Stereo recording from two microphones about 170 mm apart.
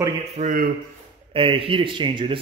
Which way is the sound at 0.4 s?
50° right (ahead or behind).